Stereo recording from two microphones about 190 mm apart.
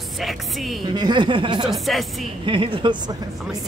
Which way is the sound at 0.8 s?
25° right (ahead or behind).